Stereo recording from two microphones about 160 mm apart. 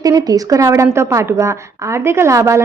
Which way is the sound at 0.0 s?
25° right (ahead or behind).